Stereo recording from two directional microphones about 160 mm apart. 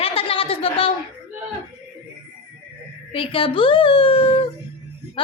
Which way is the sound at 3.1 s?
35° left (ahead or behind).